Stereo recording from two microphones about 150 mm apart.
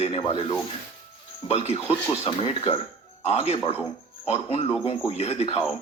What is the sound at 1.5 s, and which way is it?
A man's voice, 45° left (ahead or behind).